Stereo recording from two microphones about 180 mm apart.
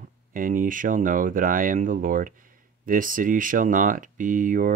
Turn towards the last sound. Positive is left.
turn(degrees=-50)  # may be behind; listen again after turning